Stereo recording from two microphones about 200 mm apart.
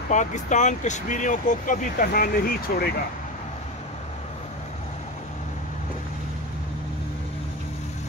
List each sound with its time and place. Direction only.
0.1 s speech: 40° left (ahead or behind)